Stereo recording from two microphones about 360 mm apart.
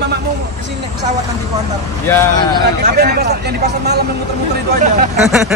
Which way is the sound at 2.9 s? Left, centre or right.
Right.